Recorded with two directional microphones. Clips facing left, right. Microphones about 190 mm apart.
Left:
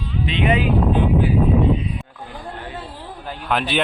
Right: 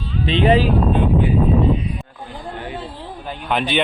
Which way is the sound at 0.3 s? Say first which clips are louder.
Right 5 dB; 35° right (ahead or behind).